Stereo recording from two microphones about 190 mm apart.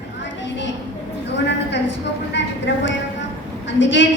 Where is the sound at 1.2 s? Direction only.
65° left (ahead or behind).